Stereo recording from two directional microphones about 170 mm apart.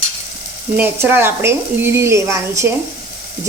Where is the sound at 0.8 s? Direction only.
15° right (ahead or behind).